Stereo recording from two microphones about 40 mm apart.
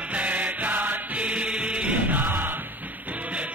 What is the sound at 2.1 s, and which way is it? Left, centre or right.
Music, right.